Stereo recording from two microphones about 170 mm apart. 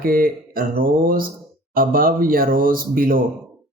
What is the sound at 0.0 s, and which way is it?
Speech, 60° right (ahead or behind).